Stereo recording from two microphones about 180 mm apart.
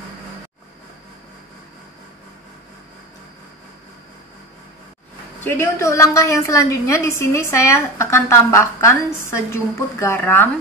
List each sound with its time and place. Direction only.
5.4 s a woman's voice: 10° left (ahead or behind)